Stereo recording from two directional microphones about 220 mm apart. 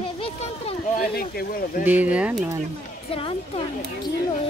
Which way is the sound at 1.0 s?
45° left (ahead or behind).